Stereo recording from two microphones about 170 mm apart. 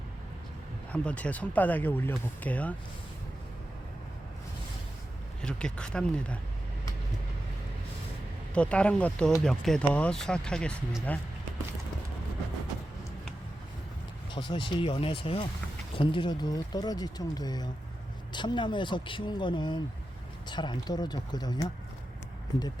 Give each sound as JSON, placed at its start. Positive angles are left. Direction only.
{"t": 0.9, "sound": "speech", "side_deg": 10}
{"t": 5.4, "sound": "speech", "side_deg": 5}
{"t": 8.5, "sound": "speech", "side_deg": 5}
{"t": 14.3, "sound": "speech", "side_deg": 30}